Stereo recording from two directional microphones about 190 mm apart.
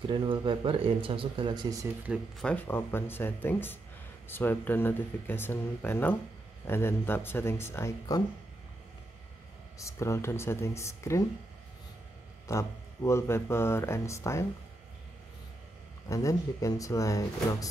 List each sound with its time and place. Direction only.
0.1 s speech: 25° right (ahead or behind)
2.0 s speech: 5° left (ahead or behind)
9.8 s speech: 15° left (ahead or behind)
12.4 s speech: 15° left (ahead or behind)
16.1 s speech: 15° left (ahead or behind)